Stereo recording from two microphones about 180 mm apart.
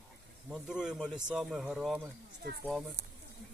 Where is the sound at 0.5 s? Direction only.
5° right (ahead or behind).